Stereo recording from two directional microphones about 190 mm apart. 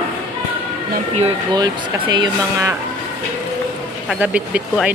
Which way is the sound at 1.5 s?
25° right (ahead or behind).